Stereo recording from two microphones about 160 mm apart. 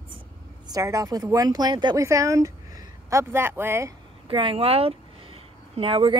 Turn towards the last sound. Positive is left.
turn(degrees=-35)  # may be behind; listen again after turning